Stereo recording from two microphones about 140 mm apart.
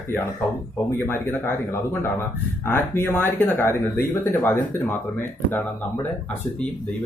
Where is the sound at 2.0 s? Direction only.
15° left (ahead or behind).